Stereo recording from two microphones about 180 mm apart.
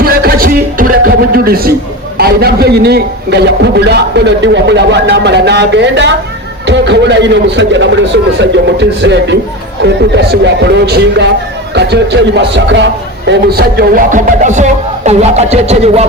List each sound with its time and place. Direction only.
0.0 s a sound: 55° right (ahead or behind)
2.1 s a man's voice: 60° right (ahead or behind); by 7.9 s 80° right
8.1 s a man's voice: 70° right (ahead or behind); by 16.0 s 35° right (ahead or behind)